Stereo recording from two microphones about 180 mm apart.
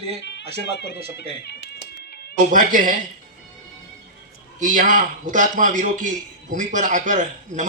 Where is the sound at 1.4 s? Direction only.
70° left (ahead or behind).